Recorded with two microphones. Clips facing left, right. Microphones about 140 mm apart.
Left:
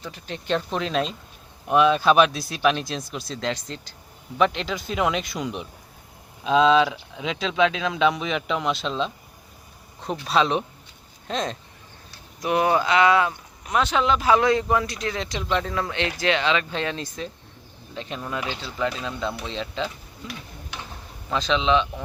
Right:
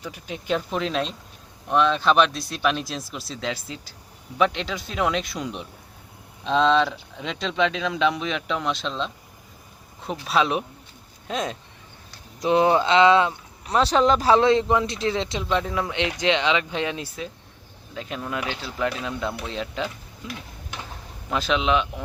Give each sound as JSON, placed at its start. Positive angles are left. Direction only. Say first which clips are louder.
{"t": 0.0, "sound": "speech", "louder": "right 1 dB", "side_deg": -10}
{"t": 12.4, "sound": "speech", "louder": "right 2 dB", "side_deg": -20}
{"t": 21.2, "sound": "speech", "louder": "left 1 dB", "side_deg": -5}